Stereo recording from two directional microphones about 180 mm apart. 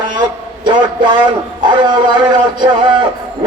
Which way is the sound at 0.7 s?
25° right (ahead or behind).